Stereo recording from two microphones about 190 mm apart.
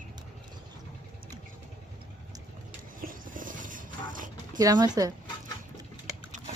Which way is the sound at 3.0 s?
45° right (ahead or behind).